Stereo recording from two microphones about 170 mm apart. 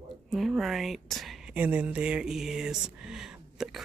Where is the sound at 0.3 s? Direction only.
Centre (ahead or behind).